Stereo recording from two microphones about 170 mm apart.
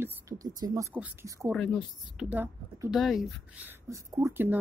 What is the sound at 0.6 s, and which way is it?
Speech, 20° right (ahead or behind).